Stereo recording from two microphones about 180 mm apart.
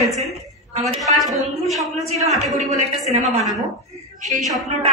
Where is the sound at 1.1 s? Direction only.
40° right (ahead or behind).